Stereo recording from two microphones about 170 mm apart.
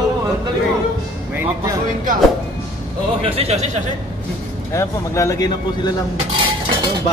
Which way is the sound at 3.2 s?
35° right (ahead or behind).